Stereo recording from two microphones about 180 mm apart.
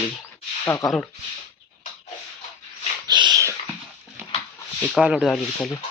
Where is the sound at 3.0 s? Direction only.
25° right (ahead or behind).